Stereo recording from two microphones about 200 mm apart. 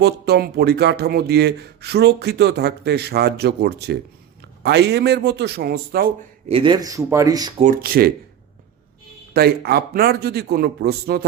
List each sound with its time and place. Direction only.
0.0 s speech: 55° right (ahead or behind)
6.5 s speech: 25° right (ahead or behind)
7.6 s a man's voice: 45° right (ahead or behind)
9.3 s a man's voice: 50° right (ahead or behind)